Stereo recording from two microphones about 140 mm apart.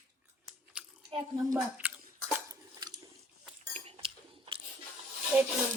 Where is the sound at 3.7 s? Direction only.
40° right (ahead or behind).